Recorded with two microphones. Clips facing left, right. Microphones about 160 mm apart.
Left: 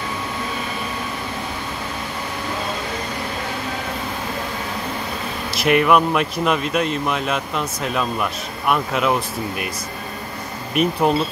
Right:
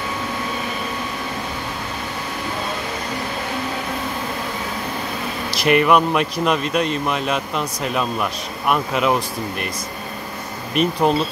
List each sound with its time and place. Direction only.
5.6 s speech: centre (ahead or behind)
10.7 s speech: 5° left (ahead or behind)